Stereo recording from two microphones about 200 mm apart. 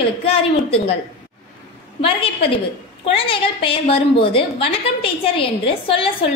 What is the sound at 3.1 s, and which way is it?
A woman's voice, 25° left (ahead or behind).